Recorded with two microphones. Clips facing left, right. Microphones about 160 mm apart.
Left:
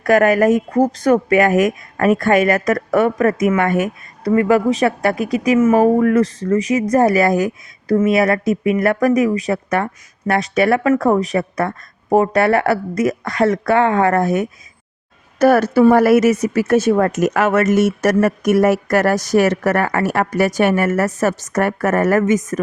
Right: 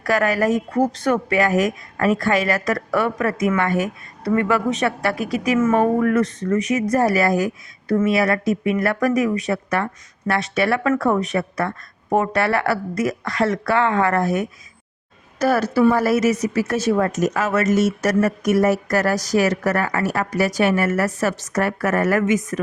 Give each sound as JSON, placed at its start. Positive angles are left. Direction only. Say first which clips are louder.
{"t": 0.0, "sound": "speech", "louder": "left 6 dB", "side_deg": 50}
{"t": 4.3, "sound": "speech", "louder": "left 5 dB", "side_deg": 35}
{"t": 5.4, "sound": "speech", "louder": "left 5 dB", "side_deg": 20}
{"t": 6.0, "sound": "speech", "louder": "left 4 dB", "side_deg": 30}
{"t": 7.2, "sound": "speech", "louder": "left 3 dB", "side_deg": 45}
{"t": 15.4, "sound": "speech", "louder": "left 5 dB", "side_deg": 55}